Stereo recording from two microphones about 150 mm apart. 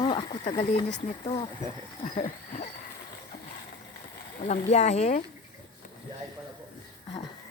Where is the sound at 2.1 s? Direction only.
55° left (ahead or behind).